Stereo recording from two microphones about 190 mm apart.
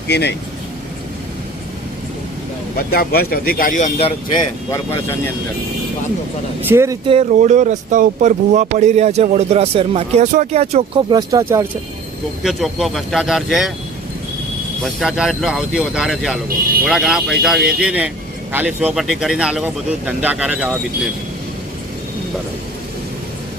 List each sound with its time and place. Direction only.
0.1 s speech: 60° left (ahead or behind)
2.9 s speech: 50° left (ahead or behind); by 4.1 s 35° left (ahead or behind)
6.7 s speech: 15° right (ahead or behind)
7.1 s speech: 35° right (ahead or behind); by 11.6 s 15° right (ahead or behind)
12.4 s speech: centre (ahead or behind)
14.8 s speech: centre (ahead or behind)